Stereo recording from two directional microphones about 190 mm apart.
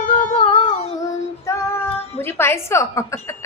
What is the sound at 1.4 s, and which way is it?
Female singing, 15° left (ahead or behind).